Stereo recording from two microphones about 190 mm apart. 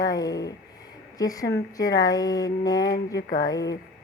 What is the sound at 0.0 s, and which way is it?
Speech, 20° left (ahead or behind).